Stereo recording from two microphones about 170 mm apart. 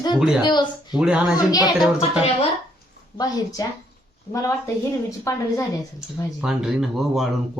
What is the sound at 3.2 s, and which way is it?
A woman's voice, 20° left (ahead or behind).